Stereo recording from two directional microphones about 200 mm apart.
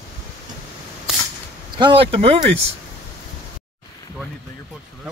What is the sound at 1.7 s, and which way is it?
Speech, 25° right (ahead or behind).